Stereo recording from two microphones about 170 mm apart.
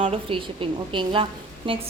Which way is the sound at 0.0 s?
30° right (ahead or behind).